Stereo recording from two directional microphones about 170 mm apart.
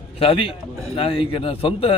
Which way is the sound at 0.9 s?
30° left (ahead or behind).